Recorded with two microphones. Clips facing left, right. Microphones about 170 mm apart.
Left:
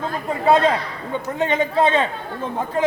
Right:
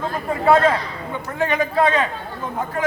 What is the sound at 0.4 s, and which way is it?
A man's voice, 20° left (ahead or behind).